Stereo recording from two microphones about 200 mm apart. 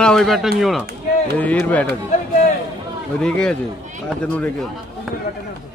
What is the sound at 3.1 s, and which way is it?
Speech, 5° left (ahead or behind).